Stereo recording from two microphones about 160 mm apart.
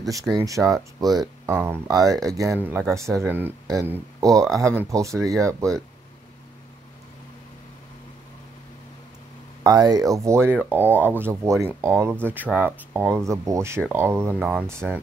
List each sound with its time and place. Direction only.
0.0 s speech: 20° right (ahead or behind)
1.5 s speech: 10° right (ahead or behind)
9.6 s speech: 25° right (ahead or behind)